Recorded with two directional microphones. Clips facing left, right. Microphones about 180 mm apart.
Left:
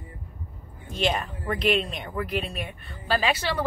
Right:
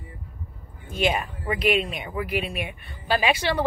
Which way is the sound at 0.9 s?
10° right (ahead or behind).